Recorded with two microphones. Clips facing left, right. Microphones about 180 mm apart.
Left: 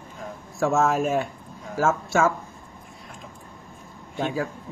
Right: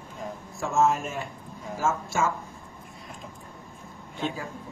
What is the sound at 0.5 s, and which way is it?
A man's voice, 70° left (ahead or behind).